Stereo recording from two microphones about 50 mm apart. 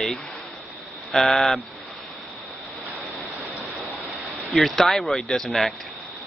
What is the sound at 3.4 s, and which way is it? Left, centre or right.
Waterfall, right.